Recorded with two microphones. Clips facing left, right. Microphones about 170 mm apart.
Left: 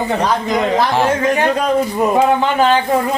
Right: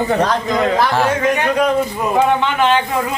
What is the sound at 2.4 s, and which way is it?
Speech, 40° left (ahead or behind).